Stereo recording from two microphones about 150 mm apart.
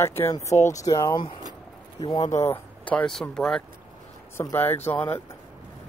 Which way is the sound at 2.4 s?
10° left (ahead or behind).